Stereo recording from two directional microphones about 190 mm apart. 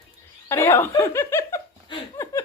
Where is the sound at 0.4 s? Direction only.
15° left (ahead or behind).